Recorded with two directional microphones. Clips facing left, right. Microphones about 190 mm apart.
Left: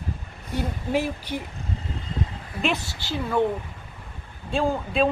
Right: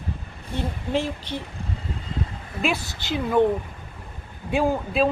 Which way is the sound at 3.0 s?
15° right (ahead or behind).